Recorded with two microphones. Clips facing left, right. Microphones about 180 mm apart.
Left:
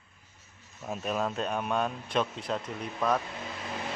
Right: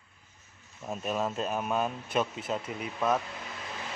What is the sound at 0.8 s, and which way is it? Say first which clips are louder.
Speech: even; centre (ahead or behind).